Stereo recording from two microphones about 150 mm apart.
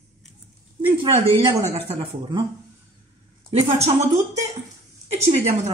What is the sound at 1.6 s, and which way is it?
Speech, 45° right (ahead or behind).